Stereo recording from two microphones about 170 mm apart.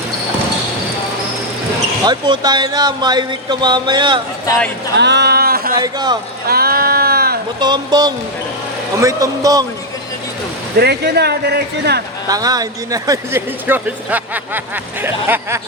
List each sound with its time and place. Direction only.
2.0 s speech: 25° right (ahead or behind)
4.9 s speech: 90° right; by 5.7 s 65° right (ahead or behind)
5.8 s speech: 25° right (ahead or behind)
6.5 s a sound: 65° right (ahead or behind)
7.6 s speech: 25° right (ahead or behind)
10.8 s a man's voice: 75° right (ahead or behind)
12.3 s speech: 20° right (ahead or behind)